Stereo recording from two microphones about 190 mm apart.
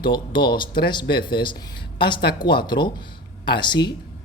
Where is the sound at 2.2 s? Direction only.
55° left (ahead or behind).